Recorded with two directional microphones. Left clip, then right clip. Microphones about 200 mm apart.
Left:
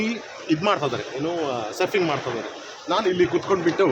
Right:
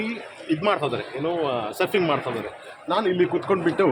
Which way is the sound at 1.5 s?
15° right (ahead or behind).